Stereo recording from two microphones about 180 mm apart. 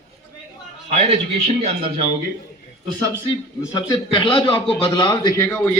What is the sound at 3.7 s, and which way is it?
A man's voice, 20° left (ahead or behind).